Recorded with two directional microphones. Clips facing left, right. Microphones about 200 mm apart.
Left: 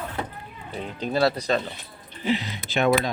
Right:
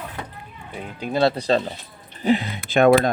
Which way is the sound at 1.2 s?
30° right (ahead or behind).